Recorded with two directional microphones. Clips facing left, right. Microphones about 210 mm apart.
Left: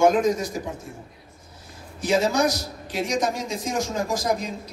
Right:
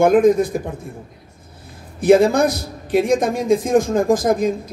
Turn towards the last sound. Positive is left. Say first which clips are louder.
# right 8 dB
turn(degrees=-50)  # may be behind; listen again after turning